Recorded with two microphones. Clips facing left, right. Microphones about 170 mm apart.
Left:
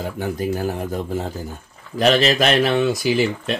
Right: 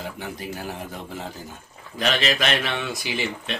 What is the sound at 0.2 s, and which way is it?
Speech, 45° left (ahead or behind).